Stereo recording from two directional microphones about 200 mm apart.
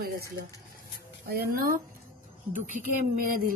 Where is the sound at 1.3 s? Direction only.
50° right (ahead or behind).